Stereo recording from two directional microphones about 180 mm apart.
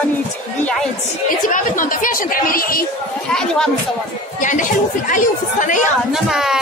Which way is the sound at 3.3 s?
5° left (ahead or behind).